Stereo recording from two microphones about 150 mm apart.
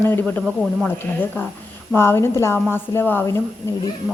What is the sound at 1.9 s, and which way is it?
A woman's voice, 15° left (ahead or behind).